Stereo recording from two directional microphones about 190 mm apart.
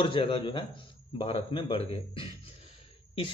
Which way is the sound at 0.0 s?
25° left (ahead or behind).